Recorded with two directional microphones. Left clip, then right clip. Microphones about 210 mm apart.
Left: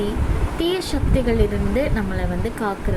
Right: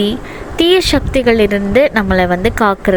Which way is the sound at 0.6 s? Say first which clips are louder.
Right 13 dB; 40° right (ahead or behind).